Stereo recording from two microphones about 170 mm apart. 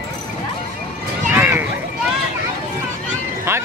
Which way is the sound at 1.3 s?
10° right (ahead or behind).